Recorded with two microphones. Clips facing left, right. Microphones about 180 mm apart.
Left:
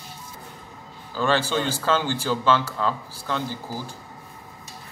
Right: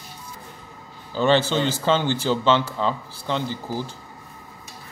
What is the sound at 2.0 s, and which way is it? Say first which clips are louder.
Speech: right 3 dB; 20° right (ahead or behind).